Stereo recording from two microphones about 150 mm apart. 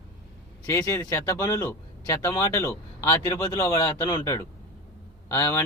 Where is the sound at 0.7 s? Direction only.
20° left (ahead or behind).